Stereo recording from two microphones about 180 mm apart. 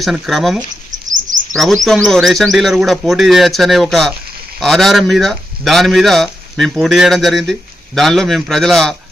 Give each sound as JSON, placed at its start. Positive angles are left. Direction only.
{"t": 0.0, "sound": "speech", "side_deg": 0}
{"t": 0.9, "sound": "bird", "side_deg": -45}
{"t": 1.5, "sound": "speech", "side_deg": 0}